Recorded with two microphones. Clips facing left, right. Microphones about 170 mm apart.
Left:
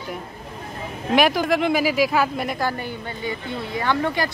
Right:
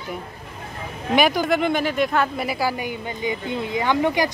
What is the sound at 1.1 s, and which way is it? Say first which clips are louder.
Speech: even; centre (ahead or behind).